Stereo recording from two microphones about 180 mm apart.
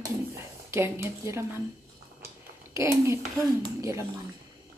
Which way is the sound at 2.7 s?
15° right (ahead or behind).